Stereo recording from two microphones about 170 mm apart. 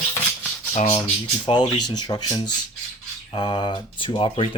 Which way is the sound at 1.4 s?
25° left (ahead or behind).